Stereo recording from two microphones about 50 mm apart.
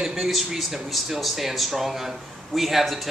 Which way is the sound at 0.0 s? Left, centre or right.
Centre.